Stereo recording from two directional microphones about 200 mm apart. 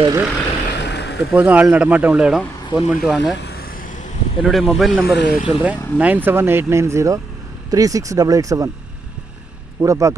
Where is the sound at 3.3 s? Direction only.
50° left (ahead or behind).